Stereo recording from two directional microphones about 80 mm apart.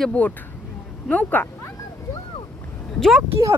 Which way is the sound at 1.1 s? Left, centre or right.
Centre.